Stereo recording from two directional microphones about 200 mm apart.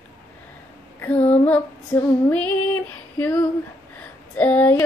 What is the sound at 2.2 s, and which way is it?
Female singing, 10° left (ahead or behind).